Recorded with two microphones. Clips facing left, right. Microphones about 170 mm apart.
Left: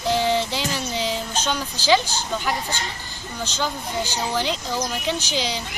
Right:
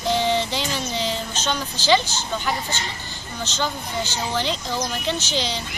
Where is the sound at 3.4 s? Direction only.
10° left (ahead or behind).